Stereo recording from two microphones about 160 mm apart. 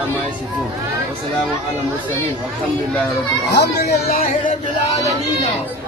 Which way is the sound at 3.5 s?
90° left.